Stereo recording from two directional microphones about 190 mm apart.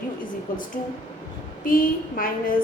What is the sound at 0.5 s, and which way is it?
A woman's voice, 45° left (ahead or behind).